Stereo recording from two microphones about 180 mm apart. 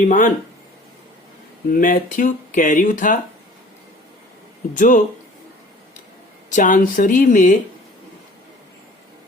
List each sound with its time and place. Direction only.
0.0 s speech: 45° left (ahead or behind)
1.7 s speech: 50° left (ahead or behind)
4.7 s speech: 45° left (ahead or behind)
6.5 s speech: 45° left (ahead or behind)